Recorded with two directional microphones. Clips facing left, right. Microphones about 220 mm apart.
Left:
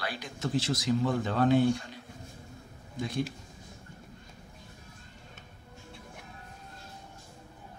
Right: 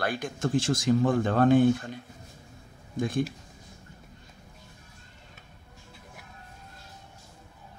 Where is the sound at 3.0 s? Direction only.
50° right (ahead or behind).